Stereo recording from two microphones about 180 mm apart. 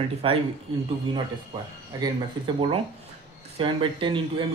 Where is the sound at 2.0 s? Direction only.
25° right (ahead or behind).